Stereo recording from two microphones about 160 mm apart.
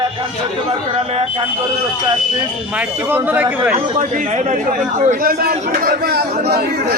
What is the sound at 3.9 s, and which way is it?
Speech, 50° right (ahead or behind).